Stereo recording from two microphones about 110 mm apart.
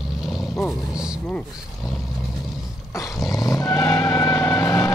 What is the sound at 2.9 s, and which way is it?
Dog, 30° left (ahead or behind).